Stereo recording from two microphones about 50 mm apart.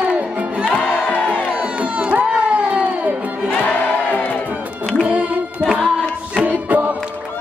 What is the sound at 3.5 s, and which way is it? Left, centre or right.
Crowd, left.